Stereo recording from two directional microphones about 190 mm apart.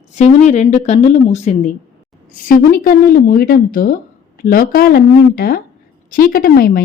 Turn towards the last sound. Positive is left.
turn(degrees=50)  # may be behind; listen again after turning